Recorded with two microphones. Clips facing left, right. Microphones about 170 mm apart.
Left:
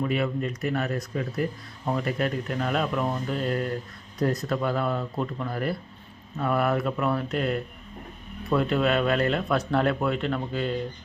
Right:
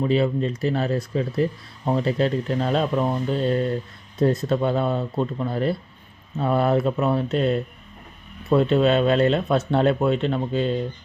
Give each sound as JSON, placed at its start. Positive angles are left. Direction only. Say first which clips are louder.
{"t": 0.0, "sound": "speech", "louder": "right 5 dB", "side_deg": -25}